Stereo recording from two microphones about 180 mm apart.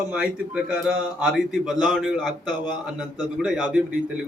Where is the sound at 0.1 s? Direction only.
5° right (ahead or behind).